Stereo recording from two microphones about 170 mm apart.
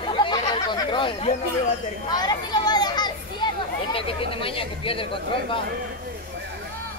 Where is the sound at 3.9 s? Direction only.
30° left (ahead or behind).